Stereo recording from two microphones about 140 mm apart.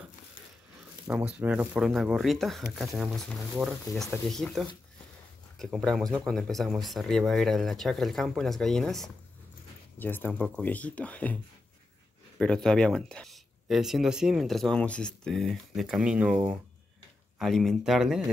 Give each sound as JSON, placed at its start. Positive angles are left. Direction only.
{"t": 1.0, "sound": "speech", "side_deg": -10}
{"t": 1.8, "sound": "speech", "side_deg": 0}
{"t": 3.9, "sound": "speech", "side_deg": 25}
{"t": 4.3, "sound": "speech", "side_deg": 0}
{"t": 9.9, "sound": "speech", "side_deg": 15}
{"t": 12.4, "sound": "speech", "side_deg": 5}